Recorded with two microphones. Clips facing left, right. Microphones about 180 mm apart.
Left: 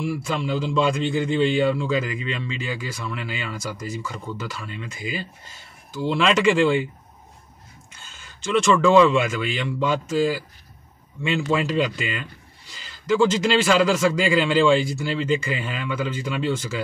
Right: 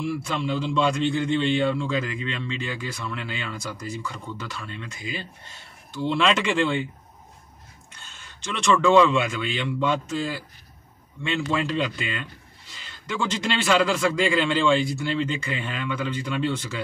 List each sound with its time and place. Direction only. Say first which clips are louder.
0.0 s a man's voice: left 1 dB; centre (ahead or behind)
8.1 s a man's voice: left 11 dB; centre (ahead or behind)